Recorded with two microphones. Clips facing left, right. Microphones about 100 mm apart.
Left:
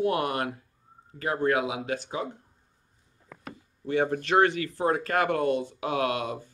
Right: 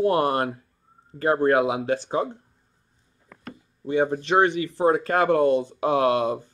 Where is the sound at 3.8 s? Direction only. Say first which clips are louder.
Right 3 dB; 20° right (ahead or behind).